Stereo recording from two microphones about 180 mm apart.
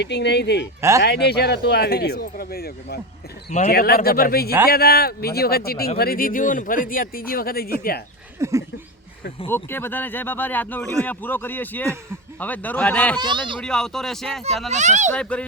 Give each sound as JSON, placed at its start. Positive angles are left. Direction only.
{"t": 0.0, "sound": "speech", "side_deg": 70}
{"t": 0.8, "sound": "speech", "side_deg": -15}
{"t": 1.0, "sound": "speech", "side_deg": 65}
{"t": 8.4, "sound": "speech", "side_deg": -15}
{"t": 9.5, "sound": "speech", "side_deg": 10}
{"t": 13.1, "sound": "speech", "side_deg": -25}
{"t": 13.6, "sound": "speech", "side_deg": 5}
{"t": 14.7, "sound": "a child's voice", "side_deg": -40}
{"t": 15.1, "sound": "speech", "side_deg": 5}